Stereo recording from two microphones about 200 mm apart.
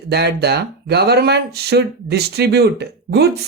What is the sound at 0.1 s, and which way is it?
Speech, 55° right (ahead or behind).